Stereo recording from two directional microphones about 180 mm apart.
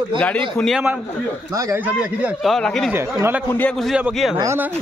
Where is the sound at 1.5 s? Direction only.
15° right (ahead or behind); by 2.9 s centre (ahead or behind).